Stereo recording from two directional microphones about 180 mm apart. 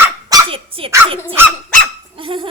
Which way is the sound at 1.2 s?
10° right (ahead or behind).